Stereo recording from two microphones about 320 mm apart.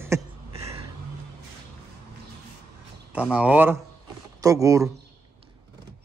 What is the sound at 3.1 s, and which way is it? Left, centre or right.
Speech, centre.